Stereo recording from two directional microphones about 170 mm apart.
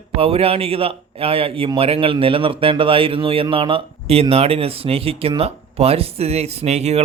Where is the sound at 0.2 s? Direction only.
35° right (ahead or behind).